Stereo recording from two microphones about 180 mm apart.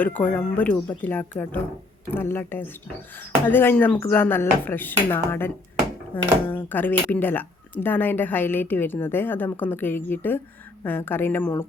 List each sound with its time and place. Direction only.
0.0 s speech: 10° left (ahead or behind)
6.6 s speech: 10° left (ahead or behind)